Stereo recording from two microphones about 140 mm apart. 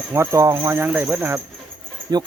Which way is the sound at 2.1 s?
30° right (ahead or behind).